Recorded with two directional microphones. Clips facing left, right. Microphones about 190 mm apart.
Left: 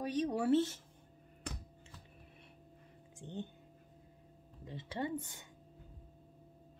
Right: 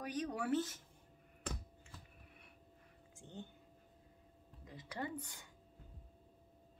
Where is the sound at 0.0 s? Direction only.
25° left (ahead or behind).